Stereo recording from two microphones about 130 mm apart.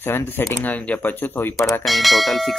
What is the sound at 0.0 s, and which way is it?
Speech, 15° left (ahead or behind).